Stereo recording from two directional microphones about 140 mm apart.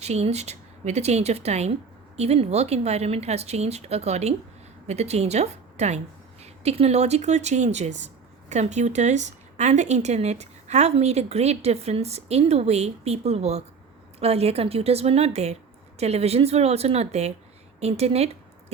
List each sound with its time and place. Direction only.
0.0 s speech: 50° right (ahead or behind)